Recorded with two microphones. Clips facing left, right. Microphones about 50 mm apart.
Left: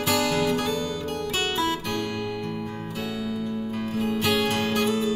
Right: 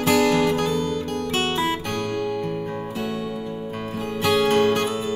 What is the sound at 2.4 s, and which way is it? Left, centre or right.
Music, centre.